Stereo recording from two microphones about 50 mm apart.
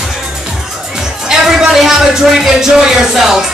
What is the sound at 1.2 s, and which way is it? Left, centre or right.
Music, centre.